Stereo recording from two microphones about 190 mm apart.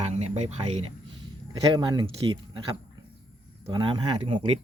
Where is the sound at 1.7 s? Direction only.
20° right (ahead or behind).